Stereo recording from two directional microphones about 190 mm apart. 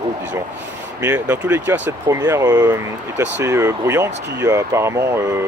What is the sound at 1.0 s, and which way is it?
Speech, 10° right (ahead or behind).